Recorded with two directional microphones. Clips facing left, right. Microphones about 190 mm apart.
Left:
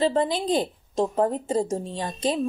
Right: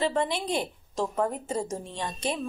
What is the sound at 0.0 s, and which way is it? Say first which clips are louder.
A woman's voice: left 4 dB; 30° left (ahead or behind).